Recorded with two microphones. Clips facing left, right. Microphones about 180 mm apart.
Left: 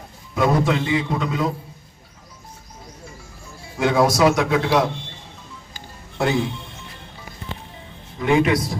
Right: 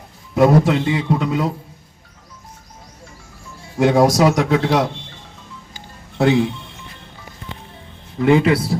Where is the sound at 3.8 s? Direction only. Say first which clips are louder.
Right 3 dB; 40° right (ahead or behind).